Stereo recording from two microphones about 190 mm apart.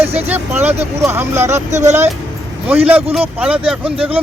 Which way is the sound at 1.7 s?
35° right (ahead or behind).